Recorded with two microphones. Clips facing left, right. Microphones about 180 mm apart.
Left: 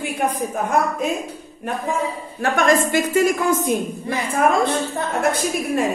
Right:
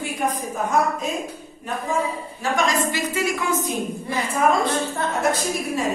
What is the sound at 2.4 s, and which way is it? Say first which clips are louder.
A woman's voice: left 5 dB; 55° left (ahead or behind).